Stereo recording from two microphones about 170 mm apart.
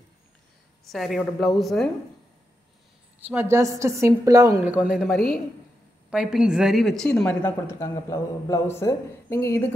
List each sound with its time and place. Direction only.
0.8 s a woman's voice: centre (ahead or behind)
3.2 s a woman's voice: 10° right (ahead or behind)
4.6 s a woman's voice: 5° right (ahead or behind); by 9.7 s 15° left (ahead or behind)